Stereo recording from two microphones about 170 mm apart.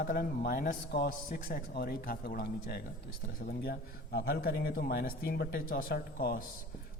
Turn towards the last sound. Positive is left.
turn(degrees=60)  # may be behind; listen again after turning